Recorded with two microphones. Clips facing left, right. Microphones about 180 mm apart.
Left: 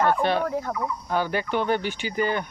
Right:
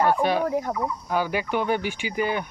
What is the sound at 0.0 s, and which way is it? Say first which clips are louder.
Speech: right 1 dB; 10° right (ahead or behind).